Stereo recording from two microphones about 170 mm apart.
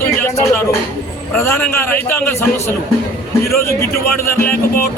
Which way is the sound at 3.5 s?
15° left (ahead or behind).